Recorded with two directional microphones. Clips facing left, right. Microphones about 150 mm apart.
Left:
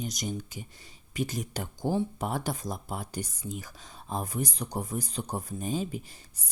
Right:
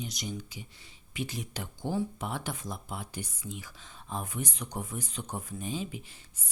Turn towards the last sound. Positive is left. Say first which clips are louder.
# left 5 dB
turn(degrees=40)  # may be behind; listen again after turning